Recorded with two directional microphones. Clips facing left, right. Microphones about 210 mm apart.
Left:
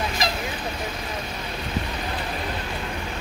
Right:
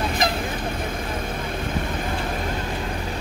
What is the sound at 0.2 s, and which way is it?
Vehicle, 55° right (ahead or behind).